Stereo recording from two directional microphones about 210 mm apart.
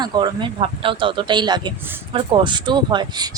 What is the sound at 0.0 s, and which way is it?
Speech, 20° right (ahead or behind).